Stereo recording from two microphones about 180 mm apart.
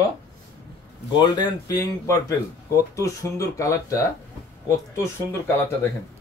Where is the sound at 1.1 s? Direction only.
20° left (ahead or behind).